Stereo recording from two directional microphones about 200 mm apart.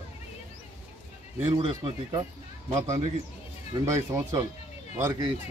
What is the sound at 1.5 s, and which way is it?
Speech, 25° right (ahead or behind).